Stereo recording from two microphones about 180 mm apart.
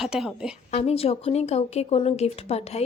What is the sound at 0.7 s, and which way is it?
Speech, 35° left (ahead or behind).